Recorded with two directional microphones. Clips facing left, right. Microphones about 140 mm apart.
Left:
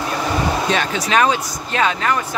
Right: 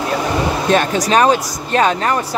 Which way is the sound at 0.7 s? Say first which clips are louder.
Right 5 dB; 45° right (ahead or behind).